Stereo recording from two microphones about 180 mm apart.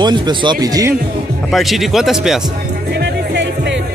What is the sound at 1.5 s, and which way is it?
Speech, centre (ahead or behind).